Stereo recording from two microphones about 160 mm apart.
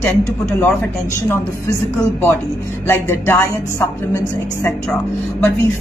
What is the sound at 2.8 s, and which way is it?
A woman's voice, 15° left (ahead or behind).